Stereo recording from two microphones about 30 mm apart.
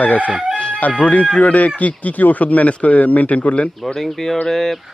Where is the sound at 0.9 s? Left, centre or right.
Left.